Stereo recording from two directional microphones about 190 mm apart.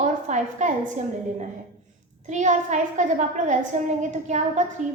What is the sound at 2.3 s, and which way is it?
A woman's voice, 40° right (ahead or behind).